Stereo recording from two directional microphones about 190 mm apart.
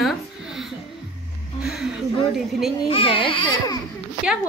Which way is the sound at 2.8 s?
30° left (ahead or behind).